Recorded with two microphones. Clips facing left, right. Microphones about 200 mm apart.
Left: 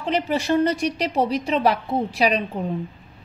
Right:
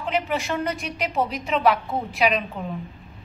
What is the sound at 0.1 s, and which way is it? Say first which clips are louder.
A woman's voice: left 5 dB; 35° left (ahead or behind).